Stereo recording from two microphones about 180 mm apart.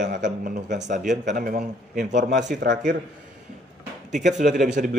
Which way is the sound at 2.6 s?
60° right (ahead or behind).